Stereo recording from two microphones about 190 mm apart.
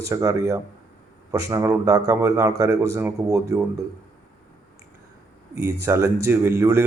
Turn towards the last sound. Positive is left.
turn(degrees=-15)  # may be behind; listen again after turning